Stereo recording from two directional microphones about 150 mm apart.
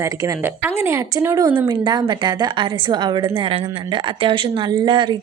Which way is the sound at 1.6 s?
30° right (ahead or behind).